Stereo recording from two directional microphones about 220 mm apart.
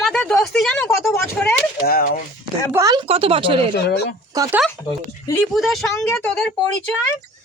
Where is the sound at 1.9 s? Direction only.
40° left (ahead or behind).